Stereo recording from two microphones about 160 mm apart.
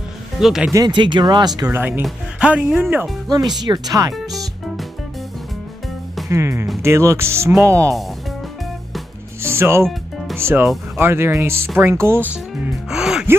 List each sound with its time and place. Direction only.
0.4 s speech: centre (ahead or behind)
0.7 s speech: 30° right (ahead or behind)
1.6 s speech: 15° right (ahead or behind)
3.3 s speech: 25° right (ahead or behind)
6.2 s speech: 20° right (ahead or behind)
9.4 s music: 15° right (ahead or behind)
9.8 s music: centre (ahead or behind)
10.3 s speech: 15° right (ahead or behind)
12.9 s gasp: 5° right (ahead or behind)